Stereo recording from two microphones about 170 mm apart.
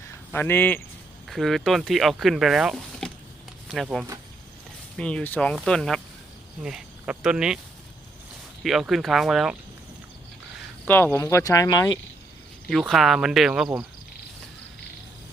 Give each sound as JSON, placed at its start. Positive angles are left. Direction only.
{"t": 0.3, "sound": "speech", "side_deg": 10}
{"t": 1.3, "sound": "speech", "side_deg": 0}
{"t": 8.6, "sound": "speech", "side_deg": 0}
{"t": 10.8, "sound": "speech", "side_deg": 10}
{"t": 12.9, "sound": "speech", "side_deg": 0}